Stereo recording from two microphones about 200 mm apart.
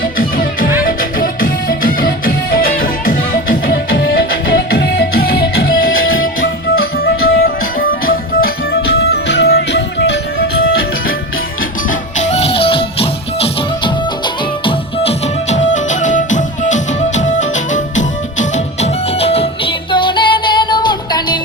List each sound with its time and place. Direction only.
0.0 s music: 45° left (ahead or behind)
7.0 s music: 50° left (ahead or behind)
9.0 s music: 60° left (ahead or behind)
11.9 s music: 35° left (ahead or behind)